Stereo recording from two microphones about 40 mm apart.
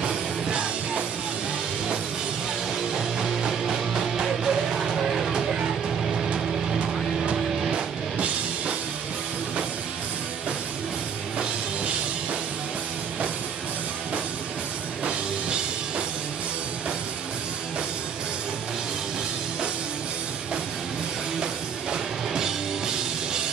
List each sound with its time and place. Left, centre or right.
0.1 s music: right
2.9 s music: centre
7.7 s music: right
21.9 s music: centre